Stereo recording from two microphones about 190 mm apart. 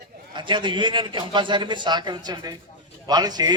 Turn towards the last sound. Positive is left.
turn(degrees=-20)  # may be behind; listen again after turning